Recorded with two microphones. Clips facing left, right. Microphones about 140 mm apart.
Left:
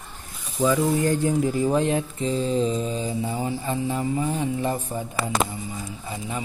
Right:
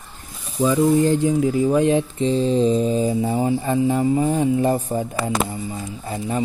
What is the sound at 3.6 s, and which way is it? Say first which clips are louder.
Mantra: right 7 dB; 50° right (ahead or behind).